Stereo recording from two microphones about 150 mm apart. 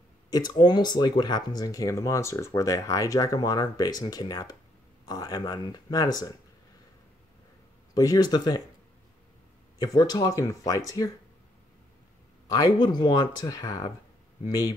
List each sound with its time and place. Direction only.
0.3 s speech: 25° left (ahead or behind)
7.9 s speech: 25° left (ahead or behind)
9.8 s speech: 25° left (ahead or behind)
12.4 s speech: 25° left (ahead or behind)